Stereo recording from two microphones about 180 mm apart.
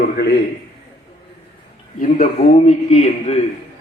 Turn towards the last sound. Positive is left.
turn(degrees=35)  # may be behind; listen again after turning